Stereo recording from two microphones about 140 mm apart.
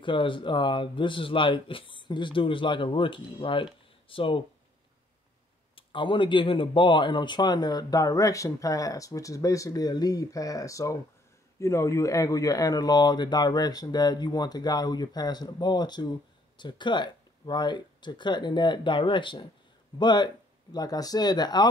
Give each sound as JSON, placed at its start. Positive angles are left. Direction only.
{"t": 0.0, "sound": "speech", "side_deg": 35}
{"t": 5.8, "sound": "speech", "side_deg": 35}